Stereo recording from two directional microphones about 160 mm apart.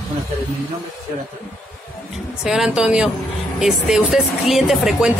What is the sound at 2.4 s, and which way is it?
Speech, 5° right (ahead or behind).